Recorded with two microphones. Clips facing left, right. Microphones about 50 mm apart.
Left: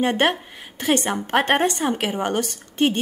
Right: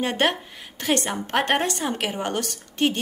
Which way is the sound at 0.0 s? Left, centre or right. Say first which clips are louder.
Left 3 dB; left.